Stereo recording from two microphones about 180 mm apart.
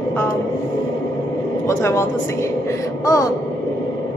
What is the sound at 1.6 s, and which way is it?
Speech, 15° left (ahead or behind).